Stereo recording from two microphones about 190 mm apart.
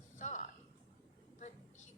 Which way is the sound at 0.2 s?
40° left (ahead or behind).